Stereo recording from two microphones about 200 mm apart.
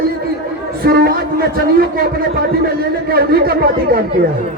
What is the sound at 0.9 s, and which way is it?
A man's voice, 50° right (ahead or behind).